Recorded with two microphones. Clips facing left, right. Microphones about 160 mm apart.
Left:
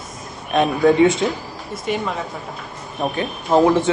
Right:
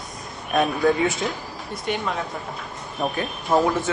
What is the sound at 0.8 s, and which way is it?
Speech, centre (ahead or behind).